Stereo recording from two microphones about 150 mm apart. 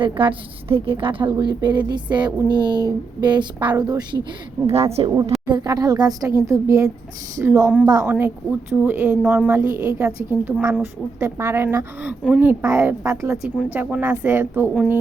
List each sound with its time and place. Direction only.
0.0 s a woman's voice: 35° right (ahead or behind)
5.5 s a woman's voice: 25° right (ahead or behind)